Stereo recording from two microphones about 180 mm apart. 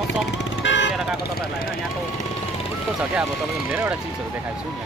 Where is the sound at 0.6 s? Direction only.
85° left.